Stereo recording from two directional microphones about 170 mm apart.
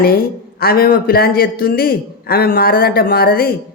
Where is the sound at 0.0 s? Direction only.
60° left (ahead or behind).